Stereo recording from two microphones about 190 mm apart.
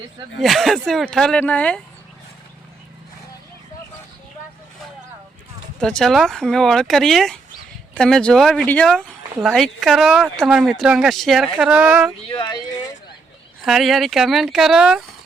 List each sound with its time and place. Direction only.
0.4 s speech: centre (ahead or behind)
5.8 s speech: 5° left (ahead or behind)
12.3 s speech: 25° left (ahead or behind)
13.7 s speech: centre (ahead or behind)